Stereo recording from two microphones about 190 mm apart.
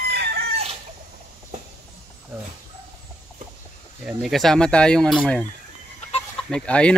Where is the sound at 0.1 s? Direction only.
55° right (ahead or behind).